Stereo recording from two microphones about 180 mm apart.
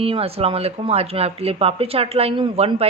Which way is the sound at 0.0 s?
30° right (ahead or behind).